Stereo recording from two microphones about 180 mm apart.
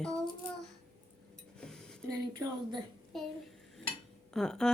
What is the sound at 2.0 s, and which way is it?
Speech, 20° right (ahead or behind).